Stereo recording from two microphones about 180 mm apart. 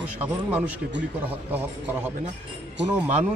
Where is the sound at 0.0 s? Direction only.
10° right (ahead or behind).